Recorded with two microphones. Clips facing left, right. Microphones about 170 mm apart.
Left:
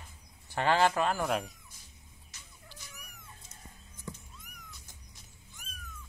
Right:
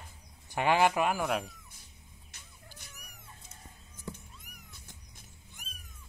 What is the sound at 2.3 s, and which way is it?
Rodents, 55° right (ahead or behind).